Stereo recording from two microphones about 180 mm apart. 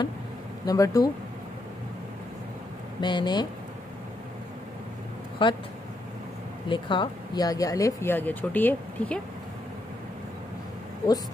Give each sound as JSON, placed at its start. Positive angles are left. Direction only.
{"t": 0.7, "sound": "speech", "side_deg": 20}
{"t": 3.0, "sound": "speech", "side_deg": 25}
{"t": 5.4, "sound": "speech", "side_deg": 30}
{"t": 6.7, "sound": "speech", "side_deg": 25}